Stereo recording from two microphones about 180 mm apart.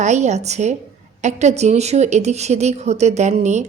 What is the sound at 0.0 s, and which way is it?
Speech, 40° right (ahead or behind).